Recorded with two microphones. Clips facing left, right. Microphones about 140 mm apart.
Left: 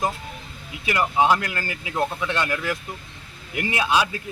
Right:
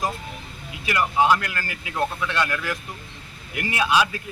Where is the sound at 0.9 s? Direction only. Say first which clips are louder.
Even; 25° left (ahead or behind).